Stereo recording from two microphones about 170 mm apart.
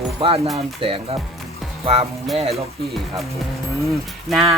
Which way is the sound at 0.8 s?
30° right (ahead or behind).